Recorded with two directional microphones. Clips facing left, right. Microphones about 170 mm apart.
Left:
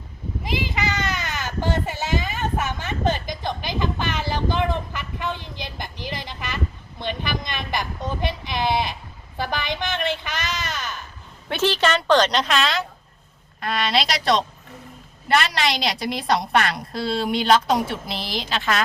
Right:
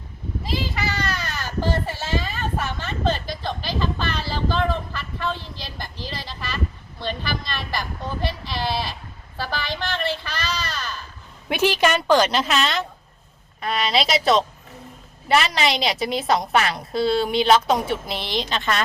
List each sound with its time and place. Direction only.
0.5 s a sound: 20° left (ahead or behind)
9.4 s speech: 20° left (ahead or behind)
11.4 s a woman's voice: 10° right (ahead or behind)